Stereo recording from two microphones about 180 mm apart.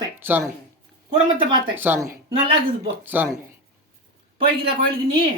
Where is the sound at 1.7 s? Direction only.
10° right (ahead or behind).